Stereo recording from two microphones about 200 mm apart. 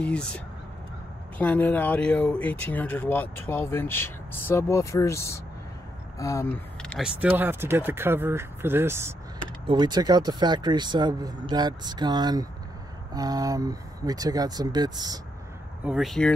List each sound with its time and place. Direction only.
0.0 s speech: 5° left (ahead or behind)
1.4 s speech: 5° left (ahead or behind); by 15.1 s 20° right (ahead or behind)
15.8 s speech: centre (ahead or behind)